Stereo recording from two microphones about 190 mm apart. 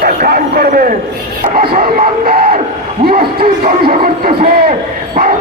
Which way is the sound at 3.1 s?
50° right (ahead or behind).